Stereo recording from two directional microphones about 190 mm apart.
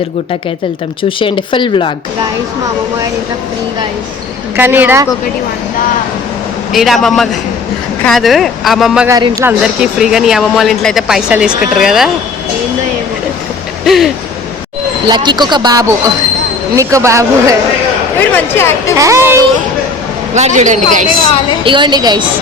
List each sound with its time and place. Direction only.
1.2 s speech: 25° left (ahead or behind)
4.5 s speech: 10° right (ahead or behind)
6.7 s speech: centre (ahead or behind)
9.0 s speech: 15° right (ahead or behind)
9.5 s speech: 5° right (ahead or behind)
13.8 s speech: centre (ahead or behind)
15.1 s speech: 25° right (ahead or behind)
18.3 s speech: 10° left (ahead or behind)
18.9 s speech: 15° right (ahead or behind)
20.3 s a man's voice: 35° right (ahead or behind)
21.6 s speech: 25° right (ahead or behind)